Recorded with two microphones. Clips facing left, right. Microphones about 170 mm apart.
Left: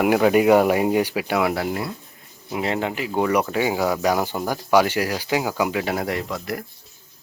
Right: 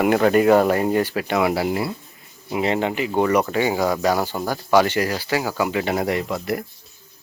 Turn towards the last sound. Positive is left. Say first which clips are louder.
# right 3 dB
turn(degrees=0)  # may be behind; listen again after turning